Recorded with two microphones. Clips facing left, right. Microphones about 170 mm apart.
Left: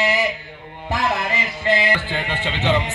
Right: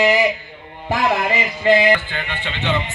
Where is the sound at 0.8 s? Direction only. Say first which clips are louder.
Right 4 dB; 15° right (ahead or behind).